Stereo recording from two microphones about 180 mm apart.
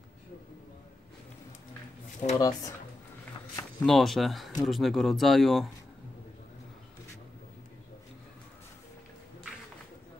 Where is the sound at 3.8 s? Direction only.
Centre (ahead or behind).